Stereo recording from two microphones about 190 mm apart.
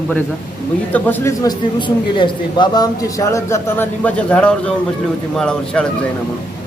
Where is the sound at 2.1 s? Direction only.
25° left (ahead or behind); by 5.8 s 5° left (ahead or behind).